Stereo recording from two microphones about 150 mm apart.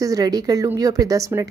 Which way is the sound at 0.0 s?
25° right (ahead or behind).